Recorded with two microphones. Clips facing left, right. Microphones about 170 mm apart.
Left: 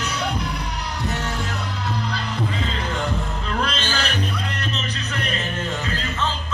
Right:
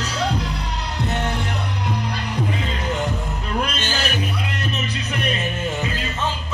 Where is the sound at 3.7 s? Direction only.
10° right (ahead or behind).